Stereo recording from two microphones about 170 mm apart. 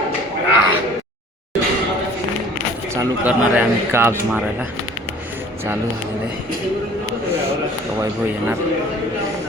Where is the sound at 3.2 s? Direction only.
10° right (ahead or behind).